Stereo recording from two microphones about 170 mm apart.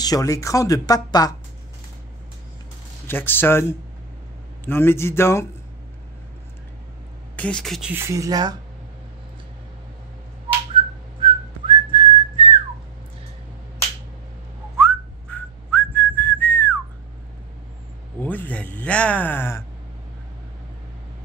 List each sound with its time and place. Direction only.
0.0 s speech: 20° left (ahead or behind)
3.1 s speech: 10° left (ahead or behind)
7.3 s speech: 5° left (ahead or behind)
7.9 s speech: 20° right (ahead or behind)
11.2 s whistling: 30° right (ahead or behind)
14.8 s whistling: 10° left (ahead or behind)
18.2 s a sound: 10° left (ahead or behind)